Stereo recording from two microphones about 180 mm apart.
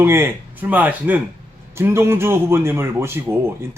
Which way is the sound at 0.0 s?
10° right (ahead or behind).